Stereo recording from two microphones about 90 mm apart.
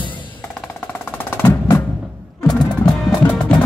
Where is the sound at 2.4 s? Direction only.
50° left (ahead or behind).